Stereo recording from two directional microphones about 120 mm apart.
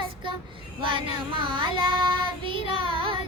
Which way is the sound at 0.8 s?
45° right (ahead or behind).